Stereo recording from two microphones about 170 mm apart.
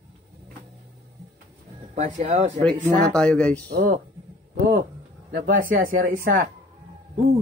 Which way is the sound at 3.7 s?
65° right (ahead or behind).